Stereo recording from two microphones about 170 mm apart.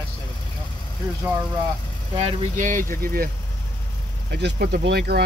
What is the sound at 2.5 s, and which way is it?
Speech, 50° right (ahead or behind).